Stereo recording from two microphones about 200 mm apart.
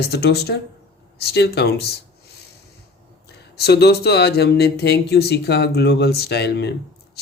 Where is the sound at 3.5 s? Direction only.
55° left (ahead or behind).